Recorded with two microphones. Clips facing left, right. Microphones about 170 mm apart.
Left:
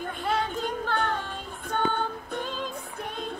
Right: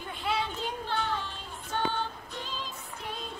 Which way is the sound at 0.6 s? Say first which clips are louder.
Left 5 dB; 50° left (ahead or behind).